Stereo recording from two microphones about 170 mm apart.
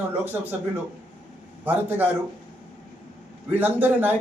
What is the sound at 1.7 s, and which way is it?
Speech, 10° right (ahead or behind).